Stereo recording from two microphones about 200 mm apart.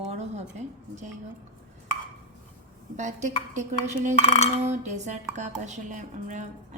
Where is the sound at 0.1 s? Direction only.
35° right (ahead or behind).